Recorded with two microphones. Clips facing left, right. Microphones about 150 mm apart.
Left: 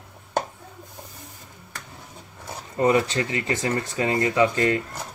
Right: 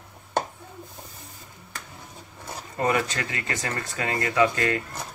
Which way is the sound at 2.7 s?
20° left (ahead or behind).